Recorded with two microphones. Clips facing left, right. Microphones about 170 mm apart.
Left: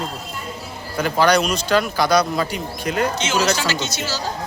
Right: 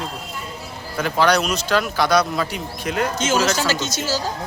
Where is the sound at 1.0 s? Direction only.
Centre (ahead or behind).